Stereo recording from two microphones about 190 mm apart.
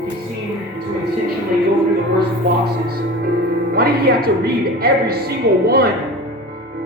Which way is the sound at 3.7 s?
50° right (ahead or behind).